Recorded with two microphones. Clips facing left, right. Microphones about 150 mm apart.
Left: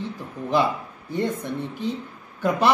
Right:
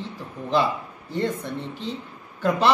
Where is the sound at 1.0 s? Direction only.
15° left (ahead or behind).